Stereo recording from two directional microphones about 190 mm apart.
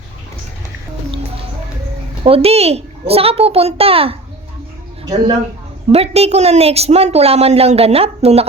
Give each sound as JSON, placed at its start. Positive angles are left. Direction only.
{"t": 2.2, "sound": "a woman's voice", "side_deg": -30}
{"t": 5.9, "sound": "a woman's voice", "side_deg": -30}